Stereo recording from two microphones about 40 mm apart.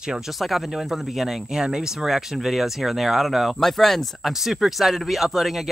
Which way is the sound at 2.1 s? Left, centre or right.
Centre.